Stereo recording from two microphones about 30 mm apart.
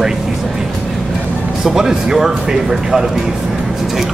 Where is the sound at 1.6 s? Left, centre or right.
Centre.